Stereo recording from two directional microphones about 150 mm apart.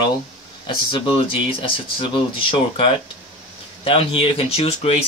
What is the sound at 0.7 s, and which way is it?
Speech, 35° left (ahead or behind).